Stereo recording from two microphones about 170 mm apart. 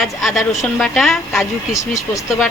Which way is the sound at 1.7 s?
20° left (ahead or behind).